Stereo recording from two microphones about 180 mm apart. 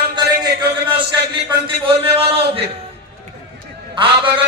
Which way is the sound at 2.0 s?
30° right (ahead or behind).